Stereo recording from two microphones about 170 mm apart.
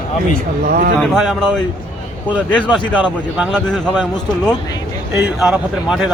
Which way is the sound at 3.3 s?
5° right (ahead or behind).